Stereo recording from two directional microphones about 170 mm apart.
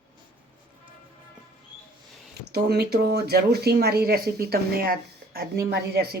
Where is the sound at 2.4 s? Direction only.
70° right (ahead or behind).